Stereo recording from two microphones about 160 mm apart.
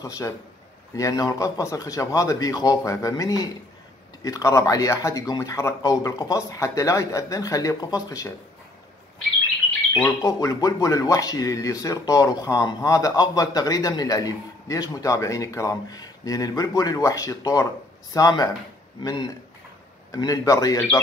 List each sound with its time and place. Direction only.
0.9 s speech: 20° left (ahead or behind)
10.2 s speech: 20° left (ahead or behind)
20.1 s speech: 20° left (ahead or behind)